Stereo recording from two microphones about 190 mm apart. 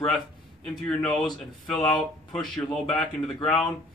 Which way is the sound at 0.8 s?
5° left (ahead or behind).